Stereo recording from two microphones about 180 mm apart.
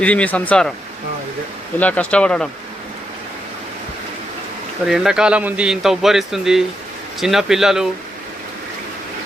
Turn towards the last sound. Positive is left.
turn(degrees=0)  # may be behind; listen again after turning